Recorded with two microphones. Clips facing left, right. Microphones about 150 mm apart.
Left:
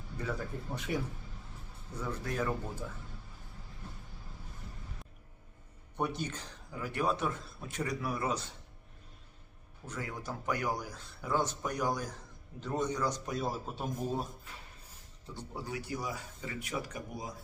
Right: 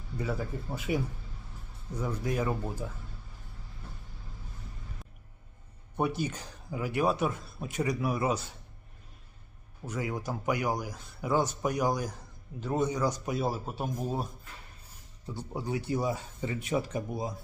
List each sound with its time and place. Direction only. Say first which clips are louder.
0.2 s speech: right 4 dB; 10° right (ahead or behind)
6.0 s speech: right 5 dB; 5° right (ahead or behind)
9.8 s speech: right 6 dB; 10° right (ahead or behind)
15.4 s speech: right 6 dB; 20° right (ahead or behind)